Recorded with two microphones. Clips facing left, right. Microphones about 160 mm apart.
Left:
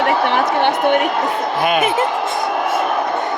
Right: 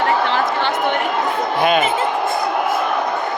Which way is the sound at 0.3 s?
60° left (ahead or behind).